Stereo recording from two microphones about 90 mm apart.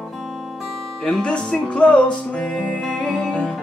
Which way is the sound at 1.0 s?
10° left (ahead or behind).